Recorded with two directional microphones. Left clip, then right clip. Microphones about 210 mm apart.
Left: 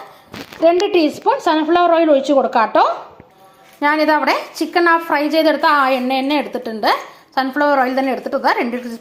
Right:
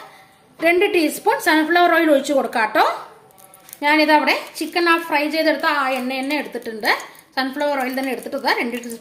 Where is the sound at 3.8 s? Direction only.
20° left (ahead or behind).